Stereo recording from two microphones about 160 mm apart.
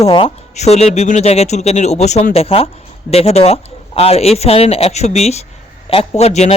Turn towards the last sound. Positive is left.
turn(degrees=40)  # may be behind; listen again after turning